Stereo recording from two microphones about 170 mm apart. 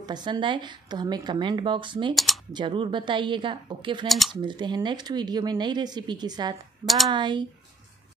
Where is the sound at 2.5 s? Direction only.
30° right (ahead or behind).